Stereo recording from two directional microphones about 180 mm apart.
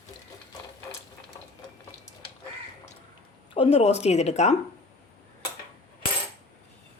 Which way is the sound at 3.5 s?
35° left (ahead or behind).